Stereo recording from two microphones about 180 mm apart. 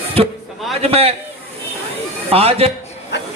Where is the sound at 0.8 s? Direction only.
35° right (ahead or behind).